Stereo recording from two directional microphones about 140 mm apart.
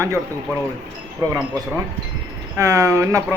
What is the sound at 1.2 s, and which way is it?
Speech, 20° right (ahead or behind).